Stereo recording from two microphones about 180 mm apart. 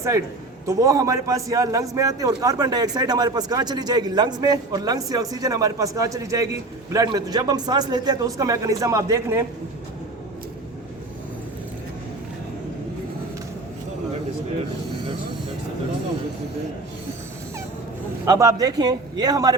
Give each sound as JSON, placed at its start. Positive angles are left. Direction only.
{"t": 0.7, "sound": "speech", "side_deg": -20}
{"t": 18.3, "sound": "speech", "side_deg": -20}